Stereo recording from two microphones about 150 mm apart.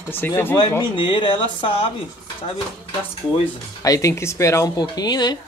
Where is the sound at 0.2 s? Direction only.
15° left (ahead or behind).